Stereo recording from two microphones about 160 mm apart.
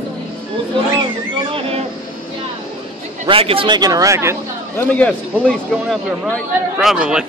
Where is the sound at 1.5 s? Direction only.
35° right (ahead or behind).